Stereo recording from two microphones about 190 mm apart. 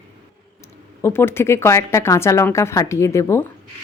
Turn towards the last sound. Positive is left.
turn(degrees=15)  # may be behind; listen again after turning